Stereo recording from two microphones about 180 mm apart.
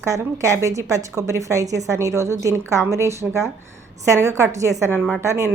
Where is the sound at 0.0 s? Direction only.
15° right (ahead or behind).